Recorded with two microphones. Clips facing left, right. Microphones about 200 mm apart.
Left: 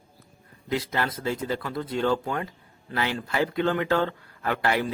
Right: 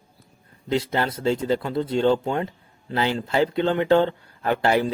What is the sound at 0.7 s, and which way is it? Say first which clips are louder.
Speech: right 4 dB; 30° right (ahead or behind).